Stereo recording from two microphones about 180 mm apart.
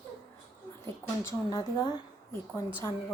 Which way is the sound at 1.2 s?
20° left (ahead or behind).